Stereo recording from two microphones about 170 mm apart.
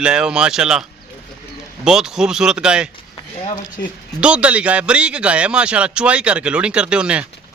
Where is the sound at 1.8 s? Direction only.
5° right (ahead or behind).